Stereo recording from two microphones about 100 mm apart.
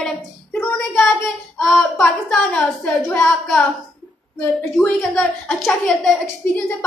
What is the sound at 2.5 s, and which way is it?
A woman's voice, 5° left (ahead or behind).